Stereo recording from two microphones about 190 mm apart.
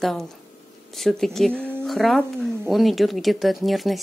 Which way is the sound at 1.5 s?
10° right (ahead or behind).